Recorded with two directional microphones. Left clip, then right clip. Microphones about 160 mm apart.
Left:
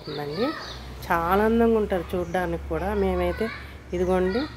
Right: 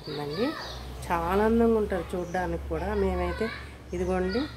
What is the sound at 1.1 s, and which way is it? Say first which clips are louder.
Speech: left 4 dB; 5° left (ahead or behind).